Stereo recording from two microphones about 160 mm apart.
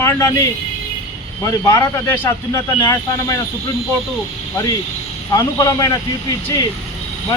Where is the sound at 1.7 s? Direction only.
15° left (ahead or behind).